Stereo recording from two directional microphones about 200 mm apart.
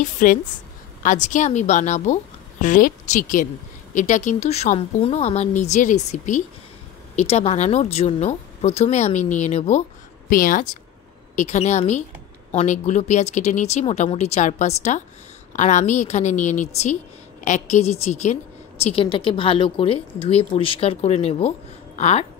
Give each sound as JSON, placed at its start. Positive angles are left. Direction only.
{"t": 0.0, "sound": "a woman's voice", "side_deg": 40}
{"t": 10.3, "sound": "a woman's voice", "side_deg": 45}